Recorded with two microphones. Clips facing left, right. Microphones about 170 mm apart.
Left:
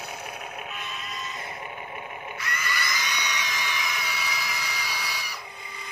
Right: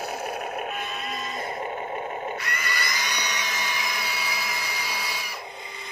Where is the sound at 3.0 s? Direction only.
50° right (ahead or behind).